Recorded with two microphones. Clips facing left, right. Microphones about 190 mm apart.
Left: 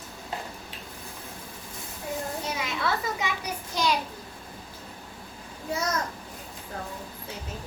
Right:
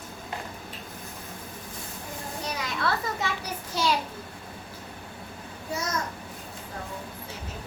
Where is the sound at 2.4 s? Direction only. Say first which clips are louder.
Even; 25° left (ahead or behind).